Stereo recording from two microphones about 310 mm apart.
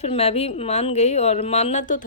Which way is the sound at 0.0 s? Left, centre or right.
Centre.